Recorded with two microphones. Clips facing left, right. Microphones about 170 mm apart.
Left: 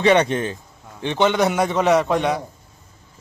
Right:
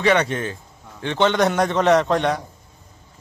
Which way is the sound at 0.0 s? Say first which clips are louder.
Left 3 dB; 20° left (ahead or behind).